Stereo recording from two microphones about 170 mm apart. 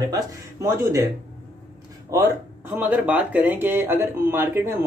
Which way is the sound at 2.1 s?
15° right (ahead or behind).